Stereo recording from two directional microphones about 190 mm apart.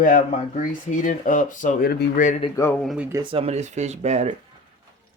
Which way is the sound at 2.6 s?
15° left (ahead or behind).